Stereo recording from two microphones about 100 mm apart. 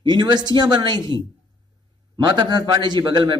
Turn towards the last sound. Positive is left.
turn(degrees=-50)  # may be behind; listen again after turning